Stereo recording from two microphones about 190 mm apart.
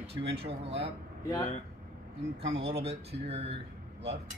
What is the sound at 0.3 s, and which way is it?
Speech, 30° right (ahead or behind).